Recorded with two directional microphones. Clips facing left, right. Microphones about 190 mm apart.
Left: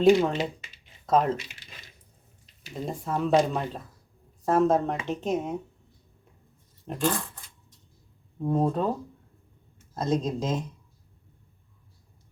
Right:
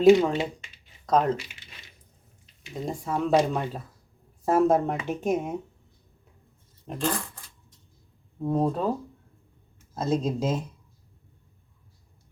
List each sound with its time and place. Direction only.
0.0 s speech: centre (ahead or behind)
2.8 s speech: centre (ahead or behind)
6.9 s speech: centre (ahead or behind)
8.4 s speech: centre (ahead or behind)
9.9 s speech: 5° right (ahead or behind)